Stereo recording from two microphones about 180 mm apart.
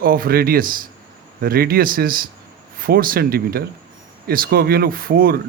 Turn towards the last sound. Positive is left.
turn(degrees=-55)  # may be behind; listen again after turning